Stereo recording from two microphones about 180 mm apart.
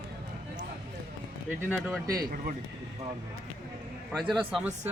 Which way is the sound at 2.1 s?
55° right (ahead or behind).